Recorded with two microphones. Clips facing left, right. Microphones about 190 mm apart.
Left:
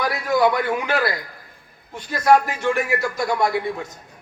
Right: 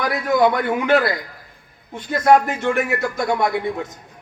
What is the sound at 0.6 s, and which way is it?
A man's voice, 20° right (ahead or behind).